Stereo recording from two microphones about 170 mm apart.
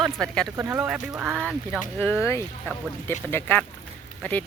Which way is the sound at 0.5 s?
20° right (ahead or behind).